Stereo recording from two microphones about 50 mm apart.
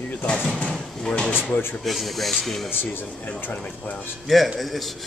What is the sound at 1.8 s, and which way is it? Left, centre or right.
Speech, centre.